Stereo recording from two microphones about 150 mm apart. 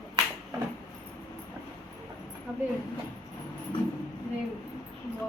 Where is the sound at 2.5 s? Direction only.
10° right (ahead or behind).